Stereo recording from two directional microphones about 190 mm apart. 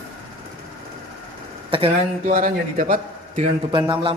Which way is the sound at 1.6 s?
30° right (ahead or behind).